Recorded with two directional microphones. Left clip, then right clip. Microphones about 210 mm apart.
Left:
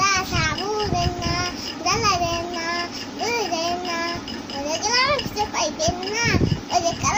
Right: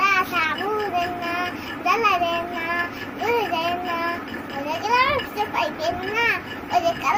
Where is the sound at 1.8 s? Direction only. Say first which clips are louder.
Right 1 dB; 25° left (ahead or behind).